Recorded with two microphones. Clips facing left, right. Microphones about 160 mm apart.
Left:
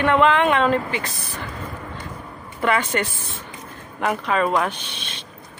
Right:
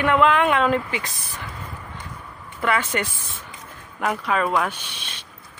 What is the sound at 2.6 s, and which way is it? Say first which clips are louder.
Speech: left 2 dB; centre (ahead or behind).